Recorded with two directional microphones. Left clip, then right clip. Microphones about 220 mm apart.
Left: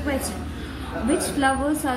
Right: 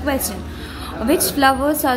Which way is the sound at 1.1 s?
25° right (ahead or behind).